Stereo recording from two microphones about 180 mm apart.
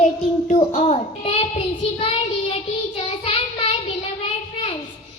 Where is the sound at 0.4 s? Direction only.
40° left (ahead or behind).